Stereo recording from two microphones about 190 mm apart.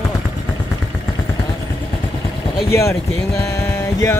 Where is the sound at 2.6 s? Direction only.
15° left (ahead or behind).